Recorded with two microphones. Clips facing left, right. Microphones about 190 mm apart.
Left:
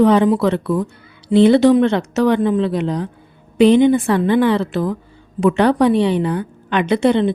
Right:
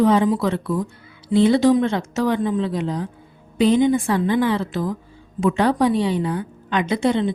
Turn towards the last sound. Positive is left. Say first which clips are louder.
# left 5 dB
turn(degrees=65)  # may be behind; listen again after turning